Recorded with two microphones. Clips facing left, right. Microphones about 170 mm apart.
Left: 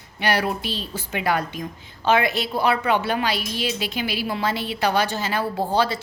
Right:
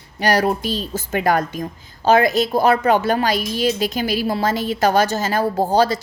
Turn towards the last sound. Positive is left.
turn(degrees=-40)  # may be behind; listen again after turning